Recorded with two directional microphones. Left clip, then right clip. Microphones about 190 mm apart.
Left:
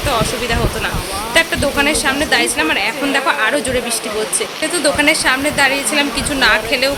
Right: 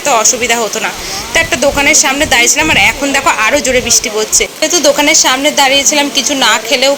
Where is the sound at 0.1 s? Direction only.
15° right (ahead or behind).